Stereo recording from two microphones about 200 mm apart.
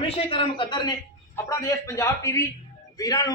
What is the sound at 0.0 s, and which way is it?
A woman's voice, 30° left (ahead or behind).